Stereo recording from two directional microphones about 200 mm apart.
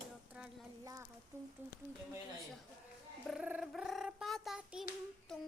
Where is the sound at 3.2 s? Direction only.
5° right (ahead or behind).